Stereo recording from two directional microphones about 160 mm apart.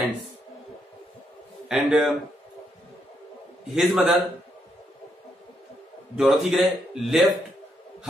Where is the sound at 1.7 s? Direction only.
5° right (ahead or behind).